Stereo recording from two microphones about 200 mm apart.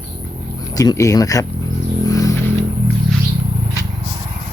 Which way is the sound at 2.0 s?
15° left (ahead or behind).